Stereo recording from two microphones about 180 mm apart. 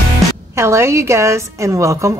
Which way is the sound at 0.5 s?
15° right (ahead or behind).